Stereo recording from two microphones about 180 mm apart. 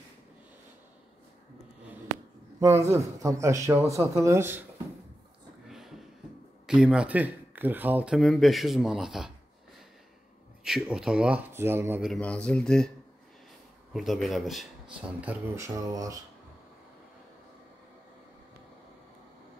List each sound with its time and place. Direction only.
2.6 s speech: 15° right (ahead or behind)
5.7 s a sound: centre (ahead or behind)
6.6 s speech: 5° right (ahead or behind)
10.6 s speech: centre (ahead or behind)
12.1 s speech: 5° left (ahead or behind)
13.9 s speech: centre (ahead or behind); by 16.2 s 20° right (ahead or behind)